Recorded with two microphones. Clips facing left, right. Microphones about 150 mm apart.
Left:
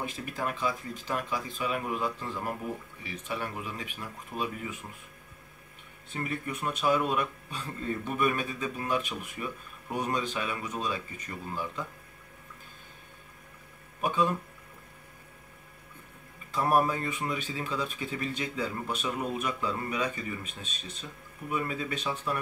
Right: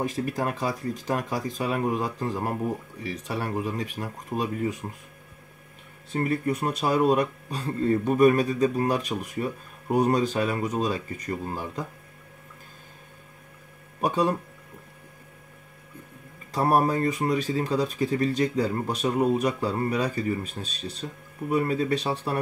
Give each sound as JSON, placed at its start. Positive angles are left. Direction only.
{"t": 0.0, "sound": "speech", "side_deg": -40}
{"t": 6.1, "sound": "speech", "side_deg": -35}
{"t": 14.0, "sound": "speech", "side_deg": -40}
{"t": 16.5, "sound": "speech", "side_deg": -35}